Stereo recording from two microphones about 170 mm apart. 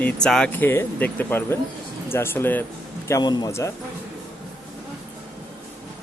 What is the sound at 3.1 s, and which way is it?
Speech, 25° left (ahead or behind).